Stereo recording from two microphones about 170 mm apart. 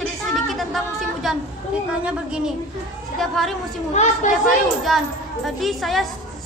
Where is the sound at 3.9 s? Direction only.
45° left (ahead or behind).